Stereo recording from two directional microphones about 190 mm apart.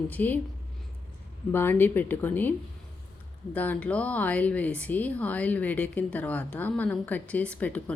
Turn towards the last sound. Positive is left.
turn(degrees=5)  # may be behind; listen again after turning